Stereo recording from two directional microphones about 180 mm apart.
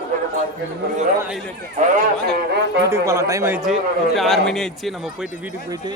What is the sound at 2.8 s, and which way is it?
Speech, 15° right (ahead or behind).